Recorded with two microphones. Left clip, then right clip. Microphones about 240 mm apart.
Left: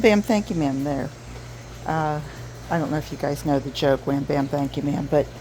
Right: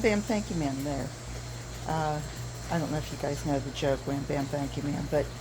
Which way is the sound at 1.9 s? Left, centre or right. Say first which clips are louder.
Left 6 dB; left.